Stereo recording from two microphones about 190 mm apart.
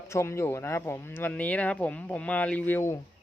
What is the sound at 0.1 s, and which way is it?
Speech, 15° left (ahead or behind).